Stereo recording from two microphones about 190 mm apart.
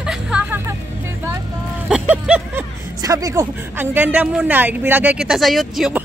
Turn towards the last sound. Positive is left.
turn(degrees=0)  # may be behind; listen again after turning